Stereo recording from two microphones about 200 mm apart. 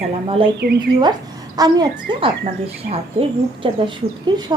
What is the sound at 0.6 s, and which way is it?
Speech, 55° right (ahead or behind).